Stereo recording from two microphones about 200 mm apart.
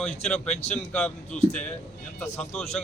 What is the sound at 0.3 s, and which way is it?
Speech, 35° left (ahead or behind).